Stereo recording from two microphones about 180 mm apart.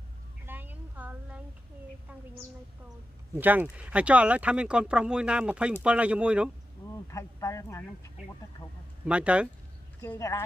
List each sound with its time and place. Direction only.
0.5 s a sound: 10° right (ahead or behind)
3.3 s speech: 10° right (ahead or behind)
7.1 s speech: 15° left (ahead or behind)
9.0 s speech: 5° right (ahead or behind)
10.0 s speech: 15° left (ahead or behind)